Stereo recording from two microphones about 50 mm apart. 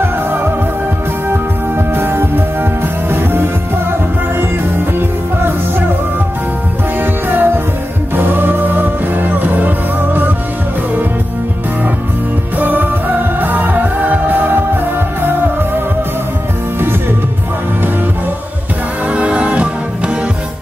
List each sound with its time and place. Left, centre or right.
2.0 s music: right
7.2 s music: right
12.5 s music: right
19.0 s music: right